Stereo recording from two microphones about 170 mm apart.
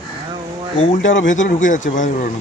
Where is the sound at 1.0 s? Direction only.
90° left.